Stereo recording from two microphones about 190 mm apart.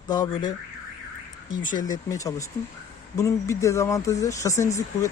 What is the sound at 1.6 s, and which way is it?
Speech, 20° left (ahead or behind).